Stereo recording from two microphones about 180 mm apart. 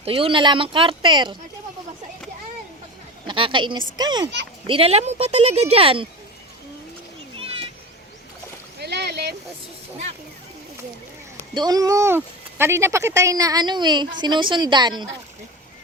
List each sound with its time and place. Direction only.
0.0 s speech: 30° right (ahead or behind)
3.2 s speech: 30° right (ahead or behind)
8.8 s boat: 65° right (ahead or behind)
11.5 s speech: 20° right (ahead or behind)